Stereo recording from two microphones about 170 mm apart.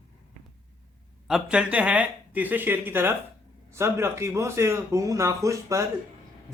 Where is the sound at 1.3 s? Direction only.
5° right (ahead or behind).